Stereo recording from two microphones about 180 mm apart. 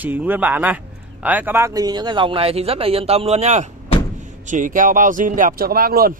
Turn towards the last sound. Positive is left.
turn(degrees=-55)  # may be behind; listen again after turning